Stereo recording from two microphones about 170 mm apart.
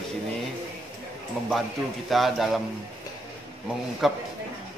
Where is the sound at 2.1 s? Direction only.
Centre (ahead or behind).